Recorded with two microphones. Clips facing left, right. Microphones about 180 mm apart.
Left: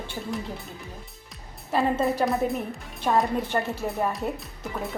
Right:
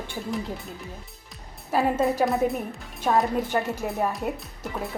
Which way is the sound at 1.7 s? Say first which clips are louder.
Right 1 dB; centre (ahead or behind).